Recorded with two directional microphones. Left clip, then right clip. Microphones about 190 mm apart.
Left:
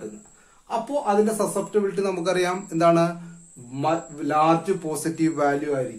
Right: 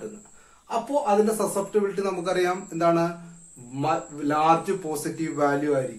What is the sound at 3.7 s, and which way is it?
Speech, 35° left (ahead or behind).